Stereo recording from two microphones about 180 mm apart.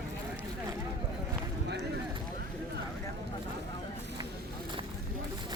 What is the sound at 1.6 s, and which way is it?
Run, 65° right (ahead or behind).